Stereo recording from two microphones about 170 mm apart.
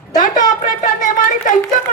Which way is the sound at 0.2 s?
50° left (ahead or behind).